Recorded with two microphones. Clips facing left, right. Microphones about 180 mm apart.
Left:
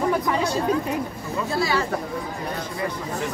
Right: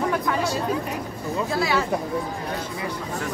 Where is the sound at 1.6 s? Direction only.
Centre (ahead or behind).